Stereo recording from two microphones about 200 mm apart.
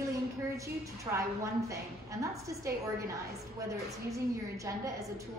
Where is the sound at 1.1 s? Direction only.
15° right (ahead or behind).